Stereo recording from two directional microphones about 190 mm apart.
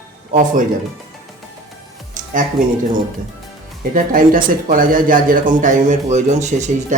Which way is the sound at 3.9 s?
45° right (ahead or behind).